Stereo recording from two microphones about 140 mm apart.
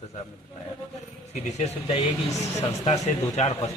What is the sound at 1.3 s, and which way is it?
Speech, 50° left (ahead or behind).